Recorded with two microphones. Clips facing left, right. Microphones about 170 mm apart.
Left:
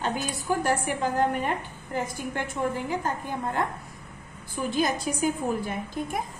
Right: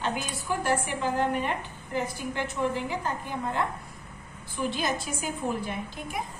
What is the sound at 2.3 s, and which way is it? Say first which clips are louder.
A woman's voice: even; 50° left (ahead or behind).